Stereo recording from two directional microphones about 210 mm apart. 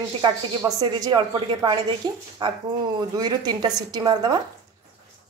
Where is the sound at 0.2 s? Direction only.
15° right (ahead or behind).